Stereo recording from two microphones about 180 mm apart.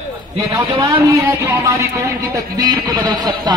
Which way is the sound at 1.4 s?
15° right (ahead or behind).